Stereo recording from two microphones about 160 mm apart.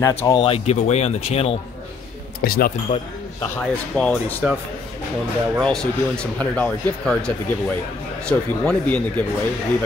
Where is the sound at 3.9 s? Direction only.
5° left (ahead or behind).